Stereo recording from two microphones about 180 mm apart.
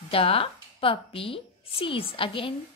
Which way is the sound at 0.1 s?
30° left (ahead or behind).